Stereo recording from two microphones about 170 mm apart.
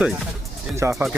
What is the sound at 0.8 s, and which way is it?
Speech, 15° right (ahead or behind).